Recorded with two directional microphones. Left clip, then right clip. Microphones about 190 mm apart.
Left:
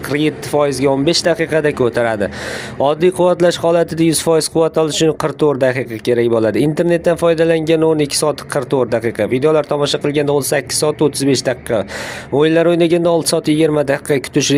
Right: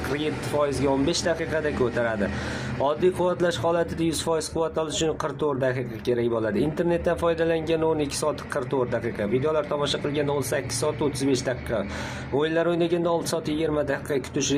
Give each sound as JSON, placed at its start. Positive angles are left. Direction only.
{"t": 0.1, "sound": "speech", "side_deg": 40}